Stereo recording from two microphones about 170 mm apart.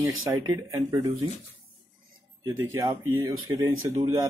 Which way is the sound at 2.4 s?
15° right (ahead or behind).